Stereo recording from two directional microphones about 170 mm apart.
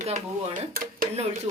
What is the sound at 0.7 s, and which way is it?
Speech, 55° right (ahead or behind).